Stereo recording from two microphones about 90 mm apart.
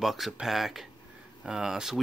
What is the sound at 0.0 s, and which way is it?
Speech, centre (ahead or behind).